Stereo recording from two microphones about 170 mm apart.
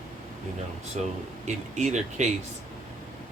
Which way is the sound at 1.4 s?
45° right (ahead or behind).